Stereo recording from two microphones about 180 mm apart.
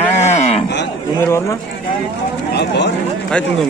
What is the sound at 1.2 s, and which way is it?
Cattle, 15° left (ahead or behind).